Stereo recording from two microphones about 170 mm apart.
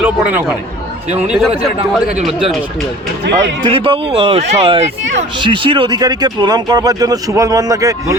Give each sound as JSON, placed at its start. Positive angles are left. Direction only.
{"t": 0.0, "sound": "speech", "side_deg": -10}
{"t": 3.6, "sound": "speech", "side_deg": -30}